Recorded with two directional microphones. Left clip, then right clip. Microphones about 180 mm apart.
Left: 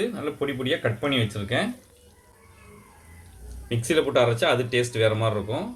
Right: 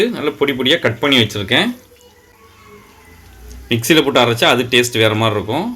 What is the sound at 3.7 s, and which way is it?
Speech, 50° right (ahead or behind).